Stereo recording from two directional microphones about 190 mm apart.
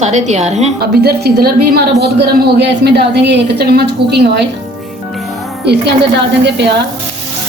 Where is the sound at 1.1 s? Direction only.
55° right (ahead or behind).